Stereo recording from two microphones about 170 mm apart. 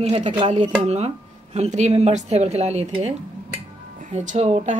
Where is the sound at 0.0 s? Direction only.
35° right (ahead or behind).